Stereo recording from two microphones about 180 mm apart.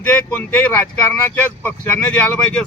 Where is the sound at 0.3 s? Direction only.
10° left (ahead or behind).